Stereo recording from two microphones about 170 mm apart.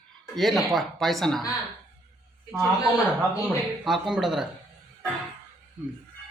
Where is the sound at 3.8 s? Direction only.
Centre (ahead or behind).